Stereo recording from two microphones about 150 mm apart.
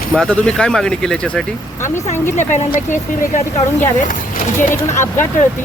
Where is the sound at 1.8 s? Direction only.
55° left (ahead or behind).